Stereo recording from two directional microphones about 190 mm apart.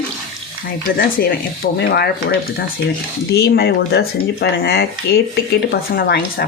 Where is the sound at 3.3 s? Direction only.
55° left (ahead or behind).